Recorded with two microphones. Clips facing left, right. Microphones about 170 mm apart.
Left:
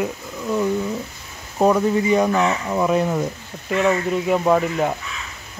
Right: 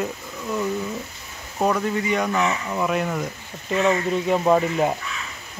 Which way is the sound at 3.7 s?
5° left (ahead or behind).